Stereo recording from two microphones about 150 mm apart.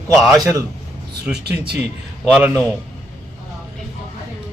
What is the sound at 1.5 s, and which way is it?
Speech, 90° right.